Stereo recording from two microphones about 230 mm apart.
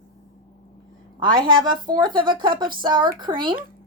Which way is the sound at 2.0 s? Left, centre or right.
Centre.